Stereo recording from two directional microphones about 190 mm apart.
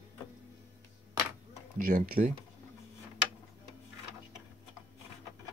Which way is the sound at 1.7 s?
45° right (ahead or behind).